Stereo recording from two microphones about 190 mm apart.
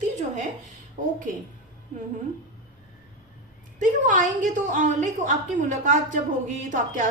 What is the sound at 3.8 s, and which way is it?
A woman's voice, 40° right (ahead or behind).